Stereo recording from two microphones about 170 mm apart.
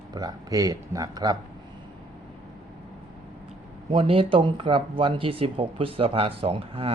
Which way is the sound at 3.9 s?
35° right (ahead or behind).